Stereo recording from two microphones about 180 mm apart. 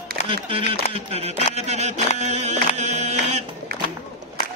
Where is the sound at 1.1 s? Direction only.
35° right (ahead or behind).